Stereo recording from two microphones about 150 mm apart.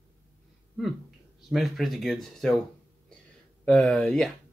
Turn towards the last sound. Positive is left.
turn(degrees=5)  # may be behind; listen again after turning